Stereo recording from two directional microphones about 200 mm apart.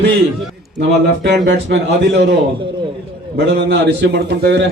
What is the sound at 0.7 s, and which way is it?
A man's voice, 55° right (ahead or behind).